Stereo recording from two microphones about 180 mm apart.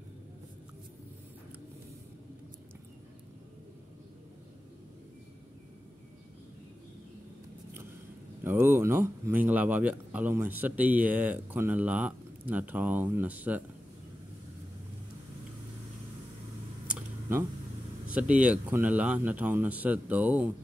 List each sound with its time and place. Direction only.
8.5 s speech: 10° right (ahead or behind)
16.8 s a sound: 10° right (ahead or behind)
18.4 s speech: 10° right (ahead or behind)